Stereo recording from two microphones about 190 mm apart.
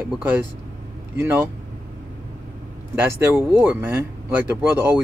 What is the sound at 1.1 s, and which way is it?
Speech, 15° right (ahead or behind).